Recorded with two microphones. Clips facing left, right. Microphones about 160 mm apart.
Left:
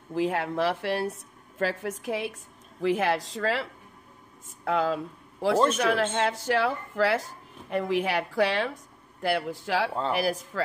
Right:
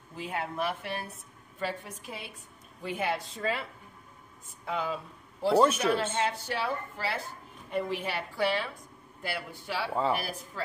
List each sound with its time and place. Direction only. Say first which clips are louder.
0.1 s a woman's voice: left 8 dB; 90° left
1.6 s a woman's voice: left 7 dB; 90° left
4.6 s a woman's voice: left 7 dB; 90° left